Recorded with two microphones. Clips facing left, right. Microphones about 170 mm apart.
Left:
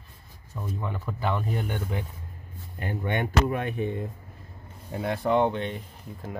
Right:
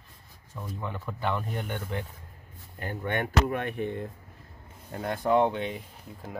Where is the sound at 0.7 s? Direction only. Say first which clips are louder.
Left 1 dB; 5° left (ahead or behind).